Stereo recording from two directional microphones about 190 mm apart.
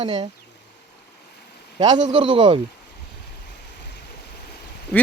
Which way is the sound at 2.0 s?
25° right (ahead or behind).